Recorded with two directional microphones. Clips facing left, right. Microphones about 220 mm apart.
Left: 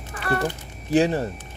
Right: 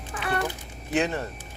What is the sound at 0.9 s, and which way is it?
Speech, 30° left (ahead or behind).